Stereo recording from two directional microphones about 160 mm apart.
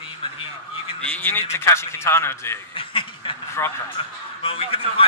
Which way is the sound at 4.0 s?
35° left (ahead or behind).